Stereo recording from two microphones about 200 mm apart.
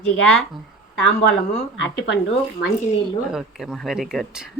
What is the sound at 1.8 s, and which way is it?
Speech, 60° left (ahead or behind).